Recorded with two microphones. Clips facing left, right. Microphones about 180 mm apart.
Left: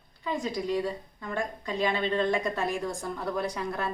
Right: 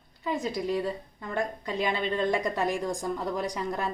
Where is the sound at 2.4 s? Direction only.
15° right (ahead or behind).